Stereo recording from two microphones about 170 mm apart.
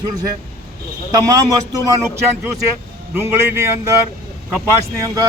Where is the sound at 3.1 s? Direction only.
15° right (ahead or behind).